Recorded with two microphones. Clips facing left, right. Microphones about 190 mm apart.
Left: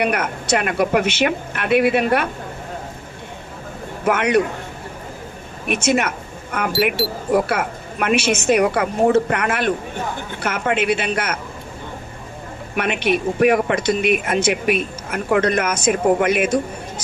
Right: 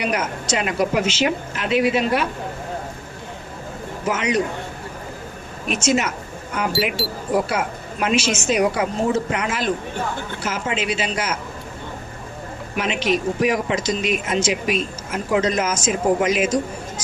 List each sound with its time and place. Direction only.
0.0 s speech: 60° left (ahead or behind)
4.0 s speech: 60° left (ahead or behind)
5.6 s speech: 60° left (ahead or behind)
12.7 s speech: 60° left (ahead or behind)